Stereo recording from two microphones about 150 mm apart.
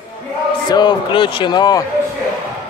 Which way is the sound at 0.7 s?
30° left (ahead or behind).